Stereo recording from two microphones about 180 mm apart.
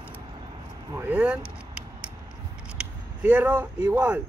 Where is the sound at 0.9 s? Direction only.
10° right (ahead or behind).